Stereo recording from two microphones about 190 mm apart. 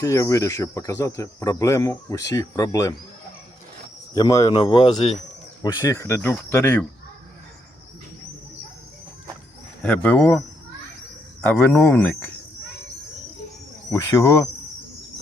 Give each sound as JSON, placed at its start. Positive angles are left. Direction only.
{"t": 0.0, "sound": "speech", "side_deg": 15}
{"t": 4.1, "sound": "speech", "side_deg": 20}
{"t": 9.8, "sound": "speech", "side_deg": 5}
{"t": 11.6, "sound": "speech", "side_deg": 10}
{"t": 13.9, "sound": "speech", "side_deg": 15}